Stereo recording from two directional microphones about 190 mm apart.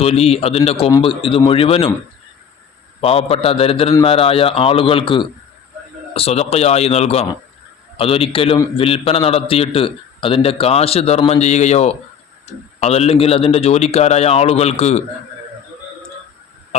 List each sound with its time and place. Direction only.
0.0 s a man's voice: 30° left (ahead or behind)
3.0 s a man's voice: 30° left (ahead or behind)